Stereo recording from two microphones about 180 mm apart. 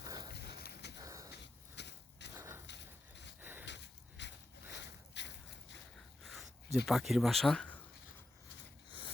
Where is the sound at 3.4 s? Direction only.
10° right (ahead or behind).